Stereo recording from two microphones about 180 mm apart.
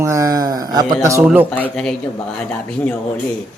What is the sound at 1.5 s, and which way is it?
Speech, 5° left (ahead or behind).